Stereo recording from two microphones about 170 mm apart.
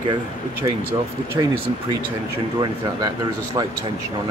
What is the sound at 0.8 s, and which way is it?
Speech, 15° right (ahead or behind).